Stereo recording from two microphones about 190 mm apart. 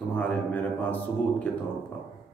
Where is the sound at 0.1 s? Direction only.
10° left (ahead or behind).